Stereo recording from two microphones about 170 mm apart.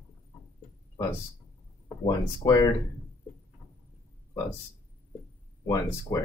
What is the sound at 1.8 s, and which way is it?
Speech, 20° left (ahead or behind).